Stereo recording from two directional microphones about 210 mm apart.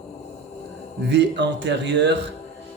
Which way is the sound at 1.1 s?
55° right (ahead or behind).